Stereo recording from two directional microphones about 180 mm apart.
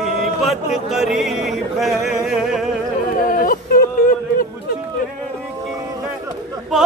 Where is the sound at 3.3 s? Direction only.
50° left (ahead or behind).